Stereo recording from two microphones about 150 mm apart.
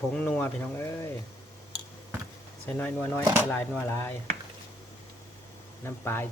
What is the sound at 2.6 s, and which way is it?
Speech, 15° left (ahead or behind).